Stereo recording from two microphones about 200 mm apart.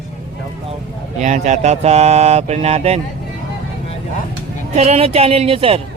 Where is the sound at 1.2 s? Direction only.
35° right (ahead or behind).